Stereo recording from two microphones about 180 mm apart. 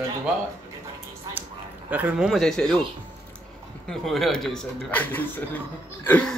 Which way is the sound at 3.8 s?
Centre (ahead or behind).